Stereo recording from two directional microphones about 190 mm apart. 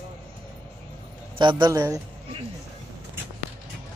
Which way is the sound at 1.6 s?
15° right (ahead or behind).